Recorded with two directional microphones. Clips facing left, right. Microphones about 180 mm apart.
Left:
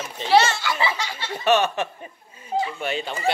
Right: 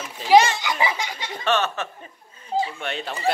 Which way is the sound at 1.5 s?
10° left (ahead or behind).